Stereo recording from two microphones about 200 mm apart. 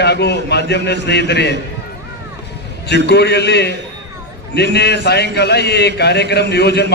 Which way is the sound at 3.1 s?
55° left (ahead or behind).